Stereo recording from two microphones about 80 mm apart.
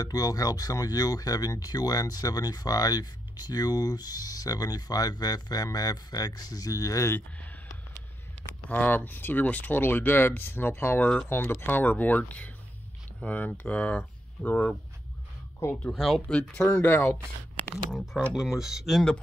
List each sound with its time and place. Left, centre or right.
0.0 s speech: left
7.1 s a sound: left
8.6 s speech: left
15.9 s speech: centre
16.7 s speech: left
17.9 s speech: centre